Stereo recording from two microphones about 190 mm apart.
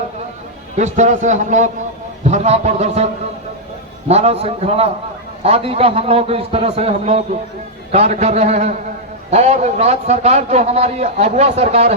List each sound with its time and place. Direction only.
0.8 s a man's voice: 40° right (ahead or behind)
4.1 s a man's voice: 35° right (ahead or behind)